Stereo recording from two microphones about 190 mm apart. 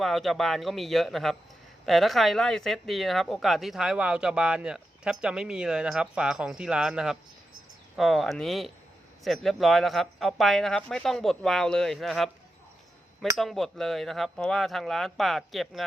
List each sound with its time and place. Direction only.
0.0 s speech: centre (ahead or behind)
13.3 s speech: centre (ahead or behind)